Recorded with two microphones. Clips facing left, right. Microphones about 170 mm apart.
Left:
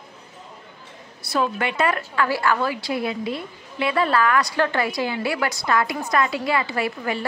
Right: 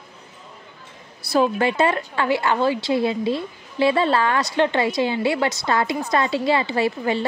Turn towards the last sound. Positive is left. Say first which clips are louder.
# right 4 dB
turn(degrees=-25)  # may be behind; listen again after turning